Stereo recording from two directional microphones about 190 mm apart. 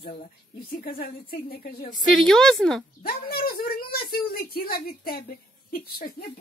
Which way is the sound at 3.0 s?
50° left (ahead or behind).